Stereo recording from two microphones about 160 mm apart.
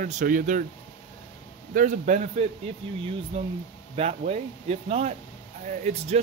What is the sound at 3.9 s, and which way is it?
Speech, 40° right (ahead or behind).